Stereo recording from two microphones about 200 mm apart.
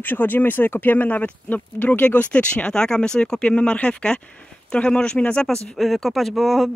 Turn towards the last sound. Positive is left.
turn(degrees=0)  # may be behind; listen again after turning